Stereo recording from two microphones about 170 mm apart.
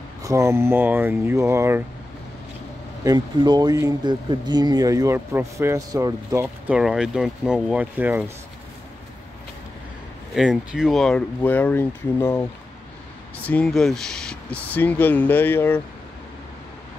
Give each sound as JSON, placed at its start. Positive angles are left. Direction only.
{"t": 0.2, "sound": "speech", "side_deg": -15}
{"t": 3.0, "sound": "speech", "side_deg": -20}
{"t": 6.4, "sound": "speech", "side_deg": -5}
{"t": 10.3, "sound": "speech", "side_deg": -5}
{"t": 13.5, "sound": "speech", "side_deg": 5}